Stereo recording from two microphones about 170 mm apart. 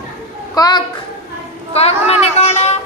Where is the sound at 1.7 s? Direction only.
35° left (ahead or behind).